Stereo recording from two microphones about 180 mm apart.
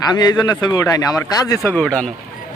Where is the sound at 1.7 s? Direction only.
5° left (ahead or behind).